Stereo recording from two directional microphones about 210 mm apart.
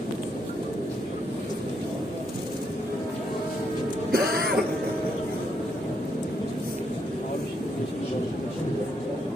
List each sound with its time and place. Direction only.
4.1 s throat clearing: 45° right (ahead or behind)